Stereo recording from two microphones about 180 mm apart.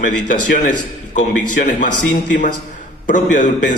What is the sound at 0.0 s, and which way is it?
A man's voice, 45° left (ahead or behind).